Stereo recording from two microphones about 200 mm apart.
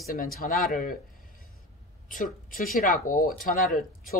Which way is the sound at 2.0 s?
45° left (ahead or behind).